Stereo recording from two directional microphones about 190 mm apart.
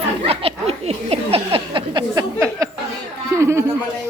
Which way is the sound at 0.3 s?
30° right (ahead or behind).